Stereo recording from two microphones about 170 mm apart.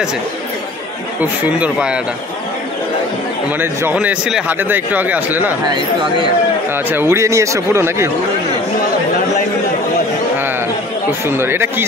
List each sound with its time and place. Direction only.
1.2 s a man's voice: 10° right (ahead or behind)
3.5 s a man's voice: 10° right (ahead or behind)
6.9 s a man's voice: 15° right (ahead or behind)
11.2 s a man's voice: 15° right (ahead or behind)